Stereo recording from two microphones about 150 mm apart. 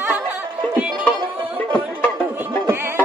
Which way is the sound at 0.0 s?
15° right (ahead or behind).